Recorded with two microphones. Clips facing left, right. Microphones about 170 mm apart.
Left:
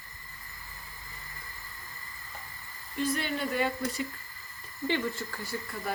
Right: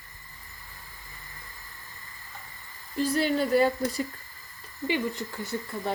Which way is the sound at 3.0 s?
35° right (ahead or behind).